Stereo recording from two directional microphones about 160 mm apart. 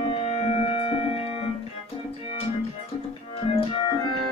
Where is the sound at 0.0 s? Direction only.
35° left (ahead or behind).